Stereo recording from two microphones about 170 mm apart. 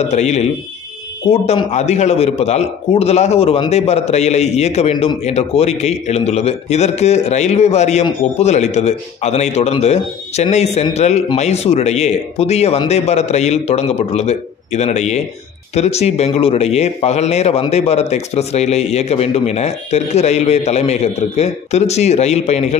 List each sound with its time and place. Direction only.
0.1 s a man's voice: 40° left (ahead or behind)